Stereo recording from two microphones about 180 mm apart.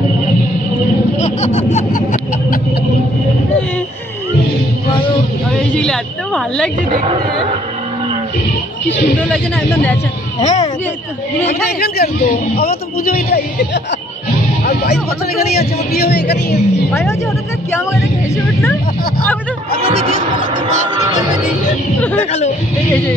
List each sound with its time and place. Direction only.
1.2 s laughter: 40° left (ahead or behind)
5.7 s a woman's voice: 5° left (ahead or behind)
9.2 s speech: 10° left (ahead or behind)
11.8 s a man's voice: 60° left (ahead or behind)
14.6 s music: 60° left (ahead or behind)
15.5 s a man's voice: 60° left (ahead or behind)
18.3 s speech: 15° left (ahead or behind)
19.7 s speech: 55° left (ahead or behind)
22.2 s speech: 40° left (ahead or behind)